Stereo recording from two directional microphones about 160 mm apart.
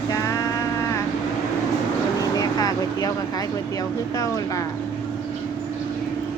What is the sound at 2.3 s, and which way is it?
Vehicle, 25° left (ahead or behind).